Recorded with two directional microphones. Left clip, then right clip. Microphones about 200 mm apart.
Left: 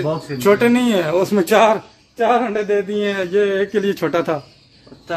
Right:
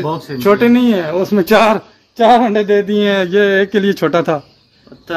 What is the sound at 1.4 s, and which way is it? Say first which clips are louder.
Speech: right 4 dB; 15° right (ahead or behind).